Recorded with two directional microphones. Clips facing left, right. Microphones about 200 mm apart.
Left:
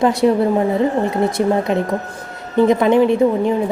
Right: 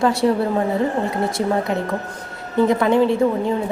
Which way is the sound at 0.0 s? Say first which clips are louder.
Left 3 dB; 20° left (ahead or behind).